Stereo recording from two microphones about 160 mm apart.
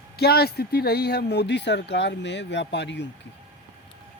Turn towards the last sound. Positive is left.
turn(degrees=90)